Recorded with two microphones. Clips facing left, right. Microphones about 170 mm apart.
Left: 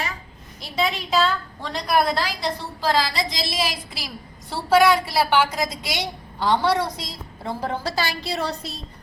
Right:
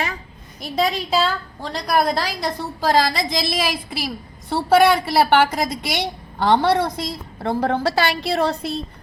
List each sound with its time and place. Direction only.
0.6 s a woman's voice: 40° right (ahead or behind); by 8.8 s 55° right (ahead or behind)